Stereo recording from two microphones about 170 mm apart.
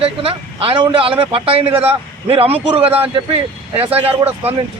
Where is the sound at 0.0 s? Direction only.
35° right (ahead or behind).